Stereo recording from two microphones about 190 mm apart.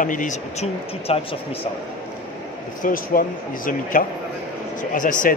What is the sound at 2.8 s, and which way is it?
Speech, 45° left (ahead or behind).